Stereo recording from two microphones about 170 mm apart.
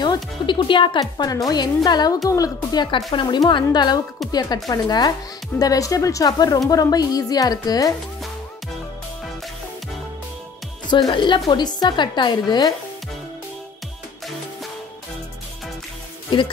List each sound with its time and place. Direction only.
0.0 s a woman's voice: 25° left (ahead or behind)
10.9 s a woman's voice: 25° left (ahead or behind)
16.3 s music: 30° left (ahead or behind)